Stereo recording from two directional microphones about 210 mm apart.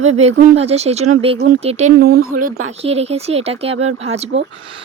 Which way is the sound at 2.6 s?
30° right (ahead or behind).